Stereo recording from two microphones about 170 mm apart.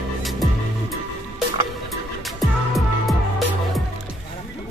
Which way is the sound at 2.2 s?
Centre (ahead or behind).